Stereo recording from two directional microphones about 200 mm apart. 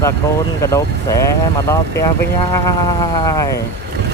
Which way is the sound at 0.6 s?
15° left (ahead or behind).